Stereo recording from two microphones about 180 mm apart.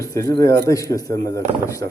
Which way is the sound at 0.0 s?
20° left (ahead or behind).